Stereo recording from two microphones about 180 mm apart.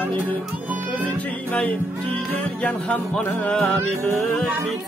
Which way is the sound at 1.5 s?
10° left (ahead or behind).